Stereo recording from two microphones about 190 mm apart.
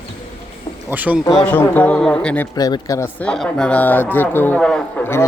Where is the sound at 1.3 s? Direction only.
5° left (ahead or behind).